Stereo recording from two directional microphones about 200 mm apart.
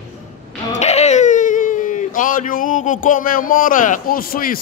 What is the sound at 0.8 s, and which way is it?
Speech, 35° left (ahead or behind).